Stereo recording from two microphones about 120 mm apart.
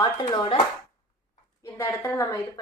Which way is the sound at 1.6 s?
25° left (ahead or behind).